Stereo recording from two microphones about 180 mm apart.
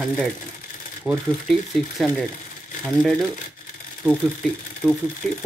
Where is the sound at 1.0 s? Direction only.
5° right (ahead or behind).